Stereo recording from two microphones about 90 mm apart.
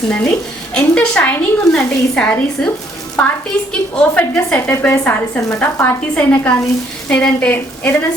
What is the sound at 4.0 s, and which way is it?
A woman's voice, 20° left (ahead or behind).